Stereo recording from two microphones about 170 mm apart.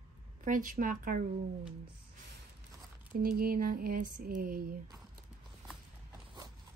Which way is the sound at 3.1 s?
60° right (ahead or behind).